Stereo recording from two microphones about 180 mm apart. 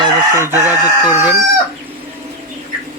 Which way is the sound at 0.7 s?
5° right (ahead or behind).